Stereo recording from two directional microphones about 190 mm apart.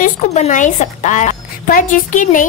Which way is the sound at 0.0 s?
40° left (ahead or behind).